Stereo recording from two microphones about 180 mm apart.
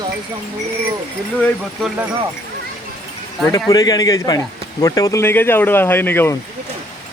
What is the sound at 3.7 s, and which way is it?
Speech, 20° left (ahead or behind).